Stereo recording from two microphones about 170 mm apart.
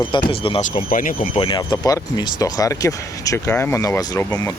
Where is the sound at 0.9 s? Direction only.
50° left (ahead or behind).